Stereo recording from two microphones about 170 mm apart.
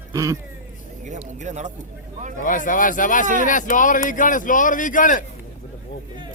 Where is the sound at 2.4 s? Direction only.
50° left (ahead or behind).